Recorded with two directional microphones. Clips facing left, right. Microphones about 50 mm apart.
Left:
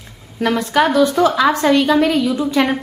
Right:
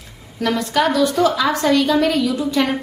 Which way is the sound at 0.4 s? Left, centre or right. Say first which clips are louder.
Left 3 dB; left.